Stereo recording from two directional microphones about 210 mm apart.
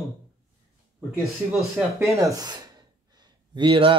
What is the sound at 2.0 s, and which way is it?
Speech, 15° right (ahead or behind).